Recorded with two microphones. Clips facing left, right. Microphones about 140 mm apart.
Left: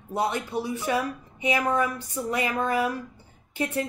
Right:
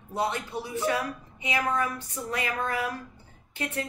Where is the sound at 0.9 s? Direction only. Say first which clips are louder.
Left 2 dB; 20° left (ahead or behind).